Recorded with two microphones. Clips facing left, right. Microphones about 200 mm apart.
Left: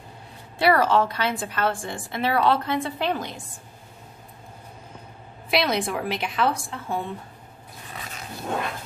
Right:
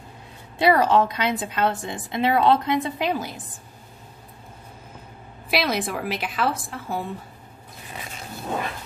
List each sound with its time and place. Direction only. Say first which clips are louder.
0.6 s a woman's voice: right 1 dB; 20° right (ahead or behind)
5.5 s a woman's voice: left 1 dB; centre (ahead or behind)